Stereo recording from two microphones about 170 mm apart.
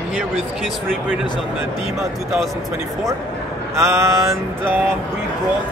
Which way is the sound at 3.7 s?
15° right (ahead or behind).